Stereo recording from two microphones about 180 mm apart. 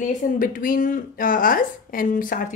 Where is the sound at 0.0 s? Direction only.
50° left (ahead or behind).